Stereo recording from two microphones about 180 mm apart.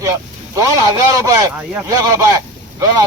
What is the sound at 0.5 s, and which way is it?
Speech, 20° right (ahead or behind).